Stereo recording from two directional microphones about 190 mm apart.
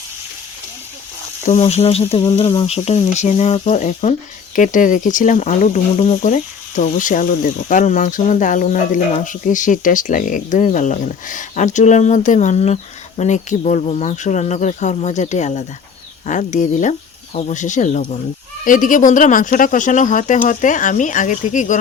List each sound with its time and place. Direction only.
1.5 s speech: 35° left (ahead or behind)